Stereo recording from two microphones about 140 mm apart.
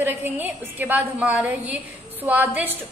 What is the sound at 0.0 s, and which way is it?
A woman's voice, 15° right (ahead or behind).